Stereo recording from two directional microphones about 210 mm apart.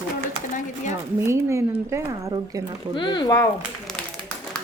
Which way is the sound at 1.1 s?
10° right (ahead or behind).